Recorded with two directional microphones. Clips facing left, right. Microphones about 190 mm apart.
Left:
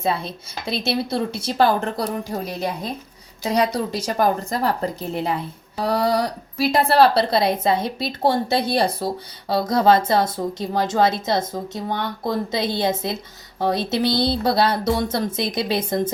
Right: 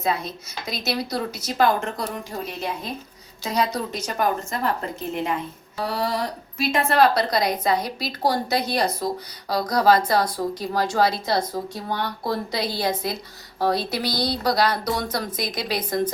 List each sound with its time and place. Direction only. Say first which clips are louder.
0.0 s a woman's voice: left 2 dB; 30° left (ahead or behind)